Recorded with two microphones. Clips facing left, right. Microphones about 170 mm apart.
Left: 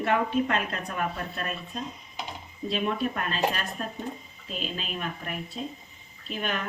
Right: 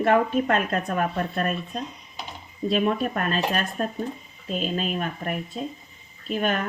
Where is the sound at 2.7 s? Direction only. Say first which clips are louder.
Right 5 dB; 50° right (ahead or behind).